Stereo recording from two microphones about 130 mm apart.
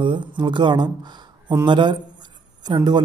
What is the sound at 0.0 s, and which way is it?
A man's voice, 40° right (ahead or behind).